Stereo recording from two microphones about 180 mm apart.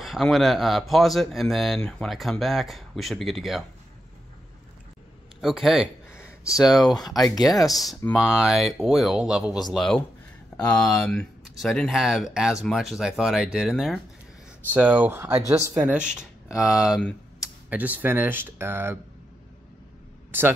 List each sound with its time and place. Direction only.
0.0 s speech: centre (ahead or behind)
5.4 s speech: centre (ahead or behind)
6.1 s a sound: 15° left (ahead or behind)
7.1 s speech: centre (ahead or behind)
7.5 s speech: 20° left (ahead or behind)
8.2 s speech: 5° right (ahead or behind)
20.2 s a sound: 10° right (ahead or behind)